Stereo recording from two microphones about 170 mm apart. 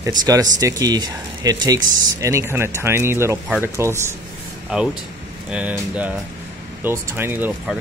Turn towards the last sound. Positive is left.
turn(degrees=-10)  # may be behind; listen again after turning